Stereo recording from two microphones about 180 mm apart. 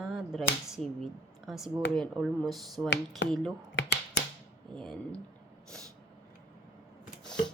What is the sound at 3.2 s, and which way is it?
Speech, 75° left (ahead or behind).